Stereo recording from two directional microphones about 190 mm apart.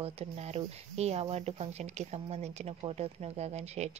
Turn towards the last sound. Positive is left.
turn(degrees=-35)  # may be behind; listen again after turning